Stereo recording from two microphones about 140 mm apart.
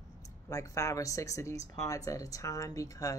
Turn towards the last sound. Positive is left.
turn(degrees=25)  # may be behind; listen again after turning